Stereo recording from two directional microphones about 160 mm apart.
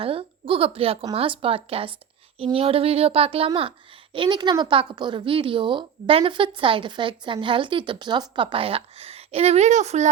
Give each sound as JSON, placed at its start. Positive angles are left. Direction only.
{"t": 0.0, "sound": "a woman's voice", "side_deg": -35}